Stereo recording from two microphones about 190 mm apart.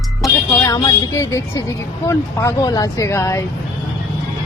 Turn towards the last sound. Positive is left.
turn(degrees=15)  # may be behind; listen again after turning